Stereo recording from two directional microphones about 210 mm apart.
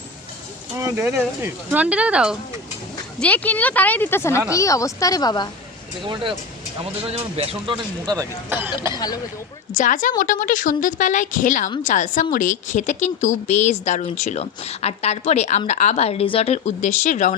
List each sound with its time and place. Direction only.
0.8 s speech: 10° right (ahead or behind)
3.2 s speech: 5° left (ahead or behind)
7.1 s speech: 30° right (ahead or behind); by 9.0 s 10° right (ahead or behind)
9.7 s a woman's voice: 40° left (ahead or behind)